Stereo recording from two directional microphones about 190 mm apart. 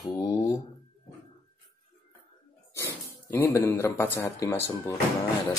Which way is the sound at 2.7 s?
15° left (ahead or behind).